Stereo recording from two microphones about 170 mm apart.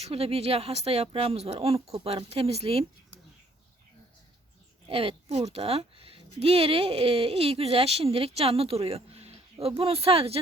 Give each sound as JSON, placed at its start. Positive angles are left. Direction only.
{"t": 0.0, "sound": "speech", "side_deg": -35}
{"t": 4.9, "sound": "speech", "side_deg": -35}